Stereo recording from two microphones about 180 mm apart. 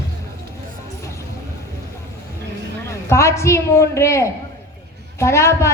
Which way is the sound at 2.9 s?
15° left (ahead or behind).